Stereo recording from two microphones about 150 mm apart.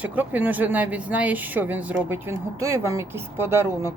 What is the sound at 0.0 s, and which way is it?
A woman's voice, 10° right (ahead or behind).